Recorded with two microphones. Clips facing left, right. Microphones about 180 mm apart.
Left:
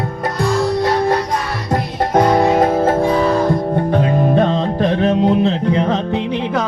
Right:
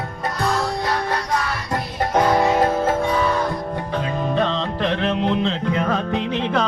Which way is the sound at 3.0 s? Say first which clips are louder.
Left 6 dB; 35° left (ahead or behind).